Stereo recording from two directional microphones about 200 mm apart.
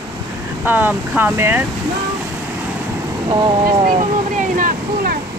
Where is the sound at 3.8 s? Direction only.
40° right (ahead or behind).